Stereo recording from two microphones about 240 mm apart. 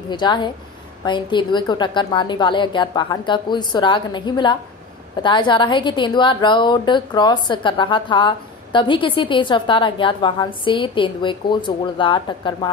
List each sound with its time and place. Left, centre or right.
0.1 s a woman's voice: centre